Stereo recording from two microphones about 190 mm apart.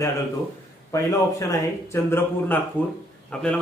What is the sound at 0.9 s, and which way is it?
A man's voice, 20° left (ahead or behind).